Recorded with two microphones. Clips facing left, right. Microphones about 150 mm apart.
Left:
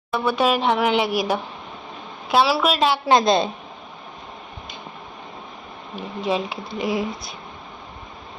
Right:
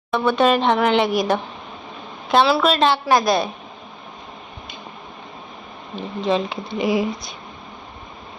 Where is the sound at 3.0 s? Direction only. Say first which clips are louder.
Left 1 dB; 25° left (ahead or behind).